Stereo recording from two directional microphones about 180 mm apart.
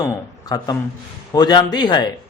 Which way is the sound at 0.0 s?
20° left (ahead or behind).